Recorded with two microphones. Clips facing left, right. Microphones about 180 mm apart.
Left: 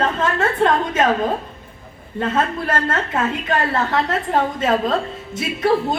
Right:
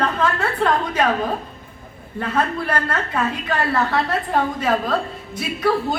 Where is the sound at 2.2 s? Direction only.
20° left (ahead or behind).